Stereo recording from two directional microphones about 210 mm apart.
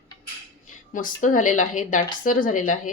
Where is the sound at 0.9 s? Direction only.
40° left (ahead or behind).